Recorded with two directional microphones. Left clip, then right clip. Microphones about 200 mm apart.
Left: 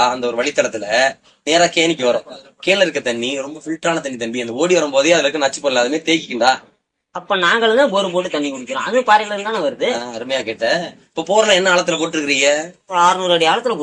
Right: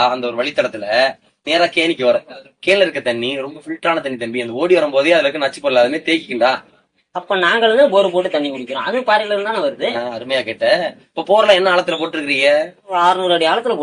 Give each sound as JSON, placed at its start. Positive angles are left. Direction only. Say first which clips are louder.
{"t": 0.0, "sound": "a man's voice", "louder": "even", "side_deg": 30}